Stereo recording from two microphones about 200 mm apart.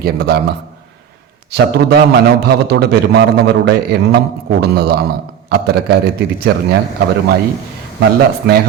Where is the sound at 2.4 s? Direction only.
55° right (ahead or behind).